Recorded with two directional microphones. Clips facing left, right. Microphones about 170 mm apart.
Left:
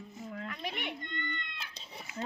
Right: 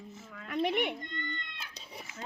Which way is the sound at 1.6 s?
10° right (ahead or behind).